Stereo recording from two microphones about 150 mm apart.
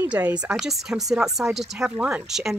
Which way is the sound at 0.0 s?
15° right (ahead or behind).